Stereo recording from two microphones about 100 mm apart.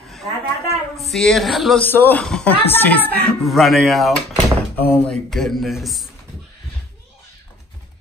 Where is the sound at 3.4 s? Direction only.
Centre (ahead or behind).